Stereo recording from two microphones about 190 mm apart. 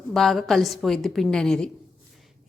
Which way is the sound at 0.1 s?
Centre (ahead or behind).